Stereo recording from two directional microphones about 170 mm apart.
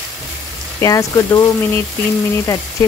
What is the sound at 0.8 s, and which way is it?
Speech, 20° left (ahead or behind).